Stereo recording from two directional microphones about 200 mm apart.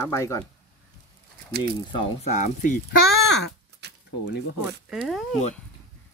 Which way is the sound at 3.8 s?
55° right (ahead or behind).